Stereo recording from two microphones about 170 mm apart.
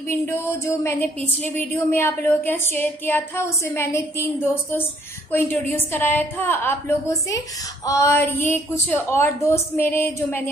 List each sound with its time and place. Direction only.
0.5 s a woman's voice: 15° left (ahead or behind)